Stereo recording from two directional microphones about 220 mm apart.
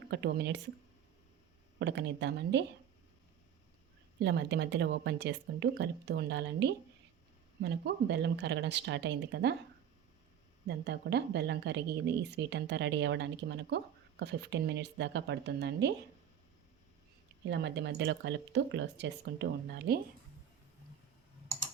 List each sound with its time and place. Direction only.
0.1 s a woman's voice: 50° right (ahead or behind)
1.8 s a woman's voice: 50° right (ahead or behind)
4.2 s a woman's voice: 50° right (ahead or behind)
10.7 s a woman's voice: 50° right (ahead or behind)
17.5 s a woman's voice: 50° right (ahead or behind)